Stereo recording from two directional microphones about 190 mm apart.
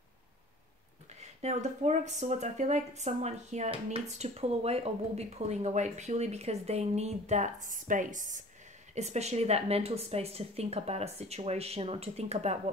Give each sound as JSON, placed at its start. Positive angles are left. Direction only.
{"t": 1.4, "sound": "a woman's voice", "side_deg": -40}